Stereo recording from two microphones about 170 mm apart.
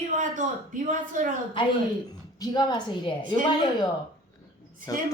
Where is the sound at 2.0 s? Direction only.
25° left (ahead or behind).